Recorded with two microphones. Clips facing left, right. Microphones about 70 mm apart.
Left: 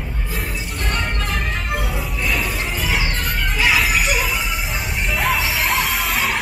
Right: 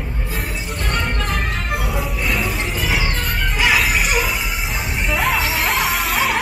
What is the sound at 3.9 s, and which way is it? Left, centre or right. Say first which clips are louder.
Music: even; right.